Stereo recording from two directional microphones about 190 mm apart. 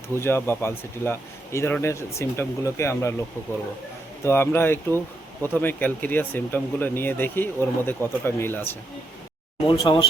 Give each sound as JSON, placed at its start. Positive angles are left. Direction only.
{"t": 0.2, "sound": "speech", "side_deg": 10}
{"t": 4.2, "sound": "speech", "side_deg": 10}
{"t": 9.6, "sound": "speech", "side_deg": 25}